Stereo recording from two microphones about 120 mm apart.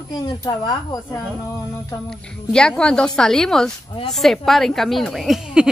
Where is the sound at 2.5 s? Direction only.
5° left (ahead or behind).